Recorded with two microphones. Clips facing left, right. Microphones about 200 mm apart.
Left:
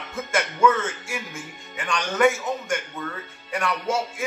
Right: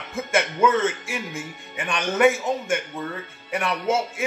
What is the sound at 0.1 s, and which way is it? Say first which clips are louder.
Speech: right 3 dB; 25° right (ahead or behind).